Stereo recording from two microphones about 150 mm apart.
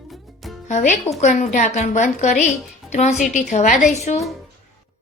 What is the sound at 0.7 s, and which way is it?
A woman's voice, 50° left (ahead or behind).